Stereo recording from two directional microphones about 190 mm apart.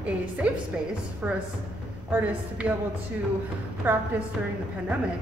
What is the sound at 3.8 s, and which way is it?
Speech, 10° right (ahead or behind).